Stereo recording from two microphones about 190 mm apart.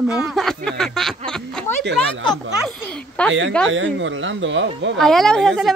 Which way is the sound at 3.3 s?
90° right.